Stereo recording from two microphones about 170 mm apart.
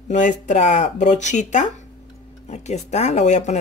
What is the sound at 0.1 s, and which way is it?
Speech, 45° left (ahead or behind).